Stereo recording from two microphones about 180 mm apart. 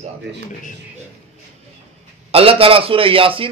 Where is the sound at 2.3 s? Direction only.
30° right (ahead or behind).